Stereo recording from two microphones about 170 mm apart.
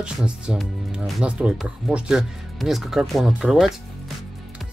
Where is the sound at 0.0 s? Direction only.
5° right (ahead or behind).